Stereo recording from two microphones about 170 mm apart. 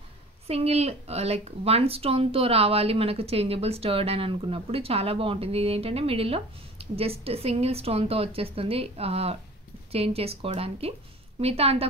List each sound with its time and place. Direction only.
0.5 s a woman's voice: 35° right (ahead or behind)